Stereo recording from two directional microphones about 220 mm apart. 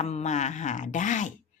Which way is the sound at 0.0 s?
30° left (ahead or behind).